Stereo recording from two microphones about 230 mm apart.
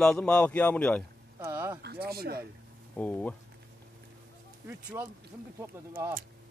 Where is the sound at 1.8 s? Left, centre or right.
Right.